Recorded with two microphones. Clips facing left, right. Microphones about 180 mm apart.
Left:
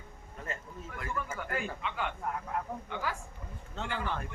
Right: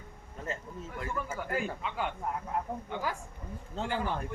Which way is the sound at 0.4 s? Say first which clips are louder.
Right 3 dB; 30° right (ahead or behind).